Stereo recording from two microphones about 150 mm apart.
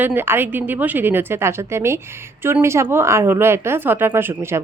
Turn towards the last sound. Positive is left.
turn(degrees=-15)  # may be behind; listen again after turning